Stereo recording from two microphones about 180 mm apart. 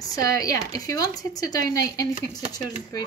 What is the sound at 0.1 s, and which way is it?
Speech, 20° left (ahead or behind).